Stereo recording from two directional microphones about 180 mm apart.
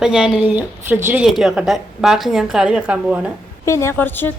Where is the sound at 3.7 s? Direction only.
15° left (ahead or behind).